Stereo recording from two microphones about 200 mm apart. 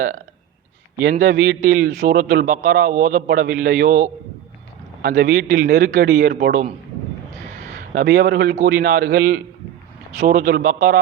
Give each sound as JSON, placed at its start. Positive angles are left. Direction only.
{"t": 1.0, "sound": "a man's voice", "side_deg": -40}
{"t": 7.9, "sound": "a man's voice", "side_deg": -45}